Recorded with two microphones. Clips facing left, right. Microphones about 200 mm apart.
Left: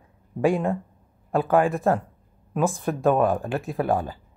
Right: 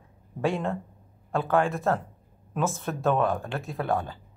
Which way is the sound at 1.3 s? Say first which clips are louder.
Left 4 dB; 5° left (ahead or behind).